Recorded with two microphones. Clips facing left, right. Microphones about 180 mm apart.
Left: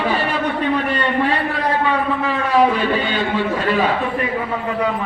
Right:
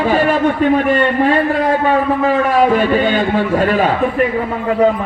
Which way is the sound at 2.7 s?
50° right (ahead or behind).